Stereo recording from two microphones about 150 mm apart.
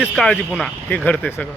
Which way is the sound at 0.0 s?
Centre (ahead or behind).